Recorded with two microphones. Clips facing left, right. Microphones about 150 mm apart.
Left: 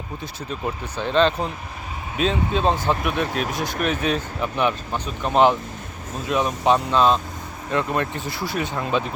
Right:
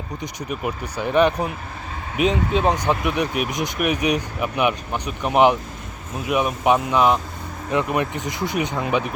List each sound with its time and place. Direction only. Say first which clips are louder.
0.2 s speech: right 2 dB; 15° right (ahead or behind)